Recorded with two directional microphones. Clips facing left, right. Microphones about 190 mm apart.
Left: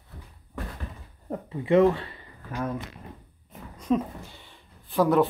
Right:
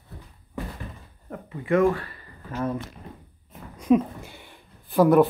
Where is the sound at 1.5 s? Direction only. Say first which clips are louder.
Left 1 dB; 20° left (ahead or behind).